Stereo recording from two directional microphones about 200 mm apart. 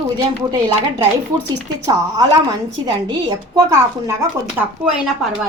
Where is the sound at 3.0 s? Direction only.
20° right (ahead or behind).